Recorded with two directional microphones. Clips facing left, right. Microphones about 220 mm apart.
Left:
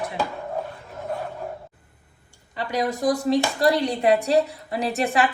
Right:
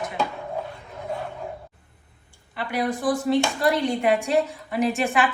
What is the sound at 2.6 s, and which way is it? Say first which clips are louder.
Speech: left 1 dB; 40° left (ahead or behind).